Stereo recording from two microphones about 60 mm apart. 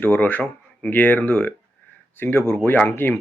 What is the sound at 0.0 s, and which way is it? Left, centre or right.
Speech, left.